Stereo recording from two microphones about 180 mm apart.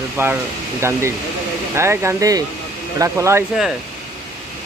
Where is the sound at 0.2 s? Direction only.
15° right (ahead or behind).